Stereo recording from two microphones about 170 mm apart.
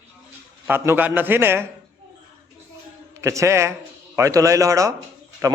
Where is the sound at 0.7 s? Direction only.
15° right (ahead or behind).